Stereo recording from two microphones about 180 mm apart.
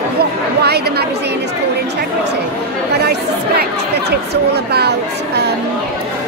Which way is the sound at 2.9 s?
65° right (ahead or behind).